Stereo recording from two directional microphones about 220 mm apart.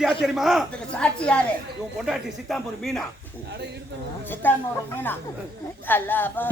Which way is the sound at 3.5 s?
50° right (ahead or behind).